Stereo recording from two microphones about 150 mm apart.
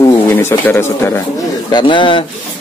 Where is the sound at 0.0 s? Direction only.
15° left (ahead or behind).